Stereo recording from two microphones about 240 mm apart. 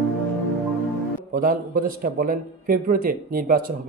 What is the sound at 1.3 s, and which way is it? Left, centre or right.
A man's voice, right.